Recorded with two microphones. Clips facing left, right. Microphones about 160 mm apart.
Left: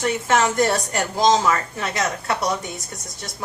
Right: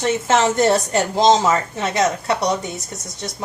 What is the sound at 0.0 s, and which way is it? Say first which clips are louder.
A woman's voice: right 2 dB; 25° right (ahead or behind).